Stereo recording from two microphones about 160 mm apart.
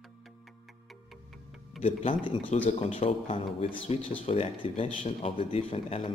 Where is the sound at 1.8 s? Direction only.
35° left (ahead or behind).